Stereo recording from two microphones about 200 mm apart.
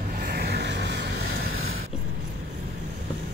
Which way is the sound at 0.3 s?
55° right (ahead or behind).